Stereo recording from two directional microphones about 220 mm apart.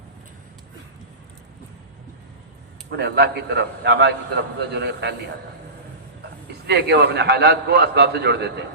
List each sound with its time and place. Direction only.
3.0 s a man's voice: 50° right (ahead or behind)
6.7 s a man's voice: 50° right (ahead or behind)